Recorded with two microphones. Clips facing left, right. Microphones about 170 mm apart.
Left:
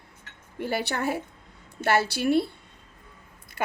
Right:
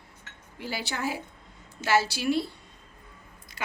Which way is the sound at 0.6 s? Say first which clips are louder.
Left 5 dB; 60° left (ahead or behind).